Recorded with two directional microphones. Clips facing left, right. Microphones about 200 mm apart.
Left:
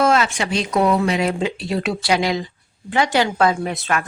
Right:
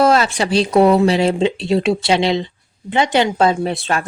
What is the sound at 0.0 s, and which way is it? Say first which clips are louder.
Speech: right 3 dB; 35° right (ahead or behind).